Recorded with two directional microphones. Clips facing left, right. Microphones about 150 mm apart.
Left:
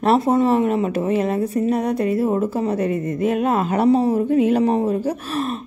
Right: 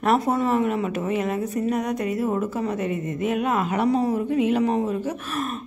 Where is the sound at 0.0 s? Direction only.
30° left (ahead or behind).